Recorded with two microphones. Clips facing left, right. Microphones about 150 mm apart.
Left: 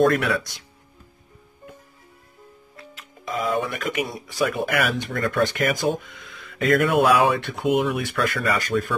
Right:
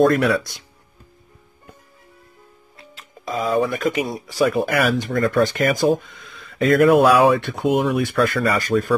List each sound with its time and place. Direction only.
2.9 s speech: 35° right (ahead or behind)